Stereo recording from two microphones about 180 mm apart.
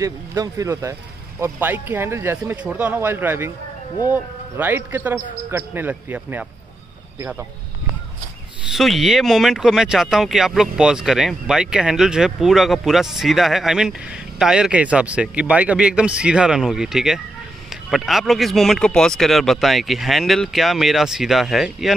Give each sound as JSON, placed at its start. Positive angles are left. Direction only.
{"t": 0.0, "sound": "speech", "side_deg": -20}
{"t": 8.7, "sound": "speech", "side_deg": 0}